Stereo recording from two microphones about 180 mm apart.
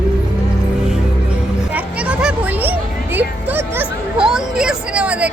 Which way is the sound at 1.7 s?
5° right (ahead or behind).